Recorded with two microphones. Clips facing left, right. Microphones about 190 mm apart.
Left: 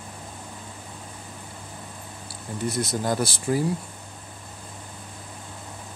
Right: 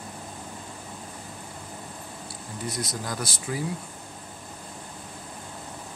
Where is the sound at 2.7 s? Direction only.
25° left (ahead or behind).